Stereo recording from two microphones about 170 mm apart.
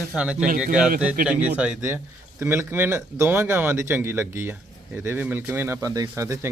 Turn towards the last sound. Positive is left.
turn(degrees=-15)  # may be behind; listen again after turning